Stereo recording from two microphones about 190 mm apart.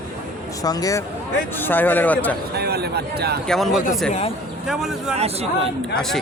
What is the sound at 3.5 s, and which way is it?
Speech, centre (ahead or behind).